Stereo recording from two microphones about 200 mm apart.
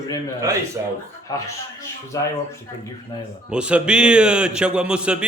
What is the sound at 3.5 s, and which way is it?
A man's voice, 5° right (ahead or behind).